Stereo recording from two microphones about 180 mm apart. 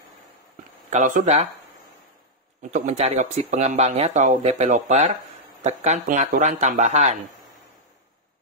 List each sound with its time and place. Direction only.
0.8 s speech: 45° right (ahead or behind)
2.7 s speech: 40° right (ahead or behind)